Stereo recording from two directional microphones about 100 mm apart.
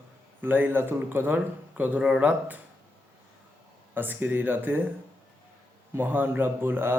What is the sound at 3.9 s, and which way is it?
Speech, 20° right (ahead or behind).